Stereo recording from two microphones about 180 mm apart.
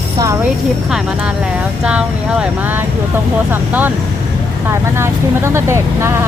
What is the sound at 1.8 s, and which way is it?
Speech, 5° right (ahead or behind).